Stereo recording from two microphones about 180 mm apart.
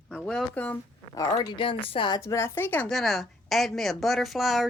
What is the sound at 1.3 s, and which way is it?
Speech, 25° left (ahead or behind).